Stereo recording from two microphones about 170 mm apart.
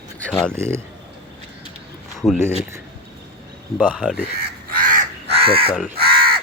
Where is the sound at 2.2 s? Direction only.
20° left (ahead or behind).